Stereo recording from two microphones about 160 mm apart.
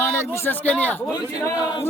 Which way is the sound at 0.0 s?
15° left (ahead or behind).